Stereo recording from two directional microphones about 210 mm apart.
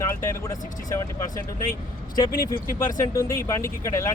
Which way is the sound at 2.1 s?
15° left (ahead or behind).